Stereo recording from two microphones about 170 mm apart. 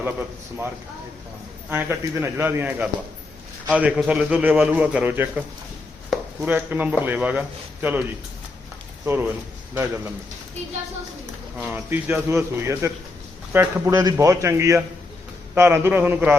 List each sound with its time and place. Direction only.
1.7 s a man's voice: 10° right (ahead or behind)
6.4 s a man's voice: 10° right (ahead or behind)
9.0 s a man's voice: 10° right (ahead or behind)
11.5 s a man's voice: 10° right (ahead or behind)